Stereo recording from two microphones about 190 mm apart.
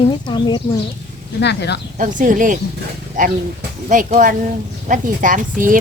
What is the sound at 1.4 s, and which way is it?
Speech, 65° left (ahead or behind).